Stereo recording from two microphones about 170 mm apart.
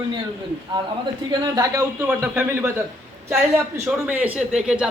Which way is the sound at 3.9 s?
10° right (ahead or behind).